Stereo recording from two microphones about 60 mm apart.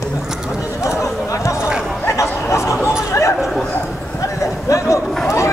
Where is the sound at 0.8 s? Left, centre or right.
Left.